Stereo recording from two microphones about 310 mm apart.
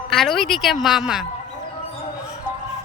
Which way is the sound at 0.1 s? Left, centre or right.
Centre.